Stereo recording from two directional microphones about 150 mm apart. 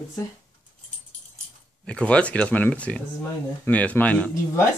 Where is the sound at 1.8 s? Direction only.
10° left (ahead or behind).